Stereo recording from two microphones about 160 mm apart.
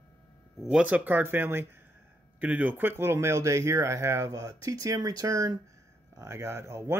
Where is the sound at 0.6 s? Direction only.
5° right (ahead or behind).